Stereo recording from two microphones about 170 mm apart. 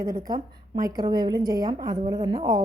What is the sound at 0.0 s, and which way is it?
A woman's voice, 20° right (ahead or behind).